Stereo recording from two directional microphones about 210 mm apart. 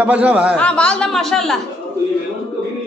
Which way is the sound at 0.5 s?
5° left (ahead or behind).